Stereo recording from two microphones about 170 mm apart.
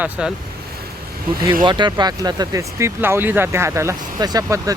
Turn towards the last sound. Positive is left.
turn(degrees=-20)  # may be behind; listen again after turning